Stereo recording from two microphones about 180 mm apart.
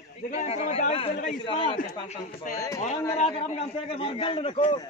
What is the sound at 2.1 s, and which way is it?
Speech, 40° left (ahead or behind).